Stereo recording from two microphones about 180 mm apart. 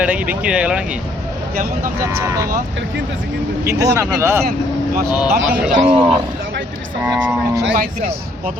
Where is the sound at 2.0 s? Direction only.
15° right (ahead or behind).